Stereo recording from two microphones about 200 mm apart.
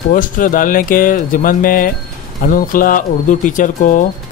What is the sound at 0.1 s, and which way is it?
Speech, 40° left (ahead or behind).